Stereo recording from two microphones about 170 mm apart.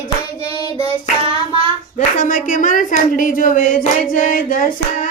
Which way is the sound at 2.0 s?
50° left (ahead or behind).